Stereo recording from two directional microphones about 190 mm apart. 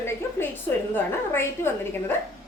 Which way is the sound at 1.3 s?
10° left (ahead or behind).